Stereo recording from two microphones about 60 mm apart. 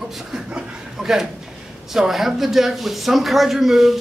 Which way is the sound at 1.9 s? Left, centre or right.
Centre.